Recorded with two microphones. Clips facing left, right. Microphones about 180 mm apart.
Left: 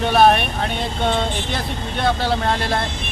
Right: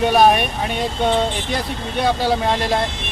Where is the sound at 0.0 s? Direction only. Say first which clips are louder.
Right 1 dB; 10° right (ahead or behind).